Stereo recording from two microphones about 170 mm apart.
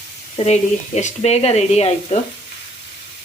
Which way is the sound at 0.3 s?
40° left (ahead or behind).